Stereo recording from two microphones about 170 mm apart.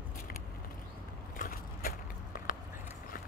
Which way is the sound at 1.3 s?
55° left (ahead or behind).